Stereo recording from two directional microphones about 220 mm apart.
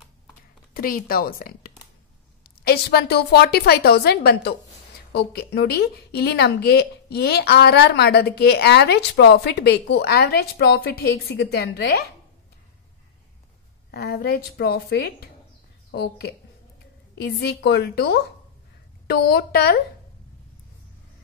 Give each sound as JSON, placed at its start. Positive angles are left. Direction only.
{"t": 0.7, "sound": "a woman's voice", "side_deg": 40}
{"t": 13.9, "sound": "a woman's voice", "side_deg": 45}